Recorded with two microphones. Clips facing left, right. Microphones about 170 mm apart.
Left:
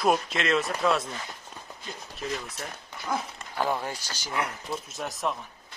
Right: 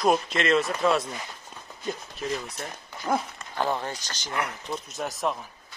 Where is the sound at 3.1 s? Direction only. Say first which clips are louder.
Right 4 dB; 45° right (ahead or behind).